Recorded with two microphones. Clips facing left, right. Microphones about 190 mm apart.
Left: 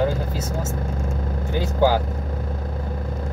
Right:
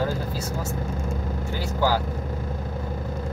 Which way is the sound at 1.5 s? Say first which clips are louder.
Left 5 dB; 20° left (ahead or behind).